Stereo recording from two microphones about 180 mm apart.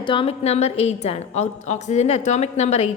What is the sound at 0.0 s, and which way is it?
A woman's voice, 30° left (ahead or behind).